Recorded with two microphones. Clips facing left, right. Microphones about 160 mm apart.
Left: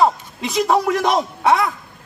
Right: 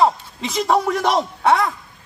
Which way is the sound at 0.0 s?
Centre (ahead or behind).